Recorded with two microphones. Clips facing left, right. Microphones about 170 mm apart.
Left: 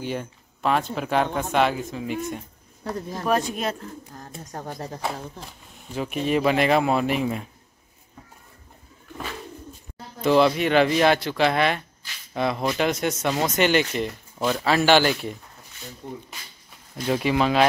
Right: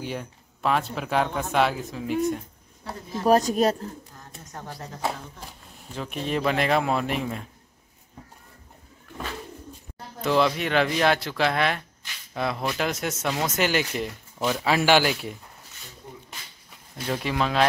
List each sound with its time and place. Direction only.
0.0 s speech: centre (ahead or behind)
3.3 s speech: 40° right (ahead or behind)
4.1 s speech: 40° left (ahead or behind)
5.9 s speech: 5° left (ahead or behind)
10.2 s speech: centre (ahead or behind)
16.9 s speech: 5° left (ahead or behind)